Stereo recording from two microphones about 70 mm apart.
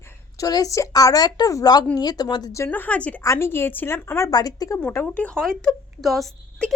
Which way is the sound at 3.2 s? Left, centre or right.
Left.